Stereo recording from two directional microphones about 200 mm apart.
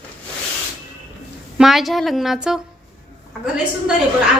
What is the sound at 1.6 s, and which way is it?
A woman's voice, centre (ahead or behind).